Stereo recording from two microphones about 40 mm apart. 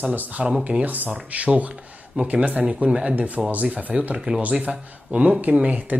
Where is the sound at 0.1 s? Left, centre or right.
Right.